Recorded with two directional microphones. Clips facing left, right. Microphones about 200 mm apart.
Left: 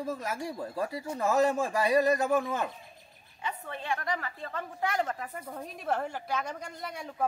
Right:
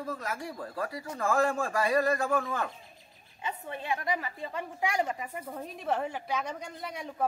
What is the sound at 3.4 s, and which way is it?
A woman's voice, 20° right (ahead or behind).